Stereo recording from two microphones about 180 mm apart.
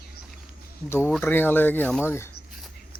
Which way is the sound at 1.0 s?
10° left (ahead or behind).